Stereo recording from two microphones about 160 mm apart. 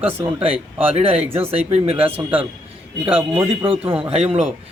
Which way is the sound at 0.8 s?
35° right (ahead or behind).